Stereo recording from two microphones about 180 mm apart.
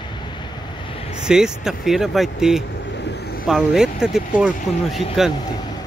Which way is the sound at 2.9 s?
65° left (ahead or behind).